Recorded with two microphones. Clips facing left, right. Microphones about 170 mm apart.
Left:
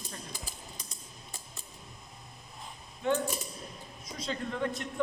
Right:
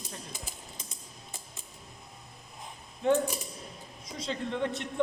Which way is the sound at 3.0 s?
35° right (ahead or behind).